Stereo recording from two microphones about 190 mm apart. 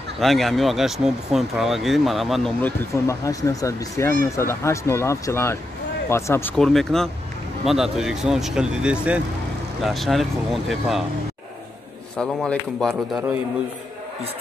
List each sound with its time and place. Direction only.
0.2 s speech: centre (ahead or behind)
3.1 s speech: 15° left (ahead or behind); by 11.1 s centre (ahead or behind)
12.2 s speech: centre (ahead or behind)